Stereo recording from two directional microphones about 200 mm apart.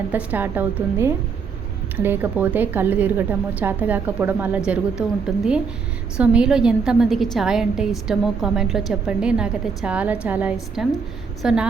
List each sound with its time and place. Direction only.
0.1 s a woman's voice: 10° right (ahead or behind)